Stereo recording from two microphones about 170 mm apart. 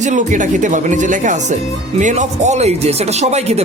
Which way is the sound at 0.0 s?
45° right (ahead or behind).